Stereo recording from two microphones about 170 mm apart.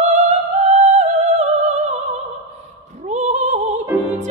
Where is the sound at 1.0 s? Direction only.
40° right (ahead or behind).